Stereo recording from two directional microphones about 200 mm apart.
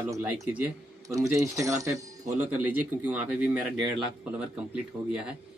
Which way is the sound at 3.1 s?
5° right (ahead or behind).